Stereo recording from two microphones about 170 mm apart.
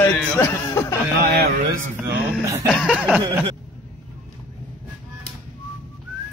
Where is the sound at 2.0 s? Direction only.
15° right (ahead or behind).